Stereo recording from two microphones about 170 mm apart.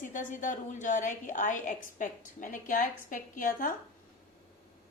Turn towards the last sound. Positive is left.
turn(degrees=55)  # may be behind; listen again after turning